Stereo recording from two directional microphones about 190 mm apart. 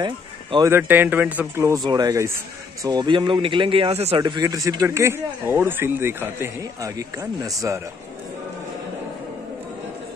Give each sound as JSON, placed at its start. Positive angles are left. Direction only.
{"t": 0.0, "sound": "speech", "side_deg": -25}
{"t": 0.7, "sound": "speech", "side_deg": -10}